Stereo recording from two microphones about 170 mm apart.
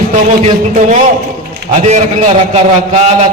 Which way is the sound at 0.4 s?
45° right (ahead or behind).